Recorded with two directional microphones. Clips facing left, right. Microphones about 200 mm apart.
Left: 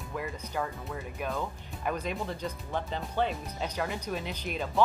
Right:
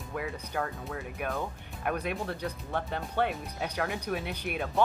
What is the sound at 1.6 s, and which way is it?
Speech, 60° right (ahead or behind).